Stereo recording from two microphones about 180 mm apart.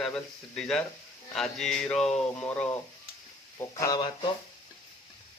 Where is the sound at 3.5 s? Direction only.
20° left (ahead or behind).